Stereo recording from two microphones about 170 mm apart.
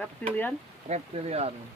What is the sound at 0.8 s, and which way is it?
Speech, 40° right (ahead or behind).